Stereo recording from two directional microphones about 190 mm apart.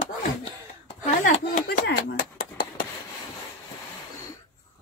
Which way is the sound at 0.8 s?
45° left (ahead or behind).